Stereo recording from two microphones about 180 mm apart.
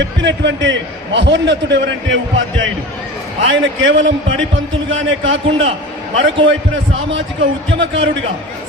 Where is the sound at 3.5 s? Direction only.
90° right.